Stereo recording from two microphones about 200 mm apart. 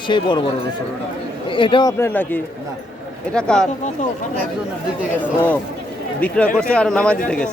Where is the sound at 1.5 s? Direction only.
25° left (ahead or behind).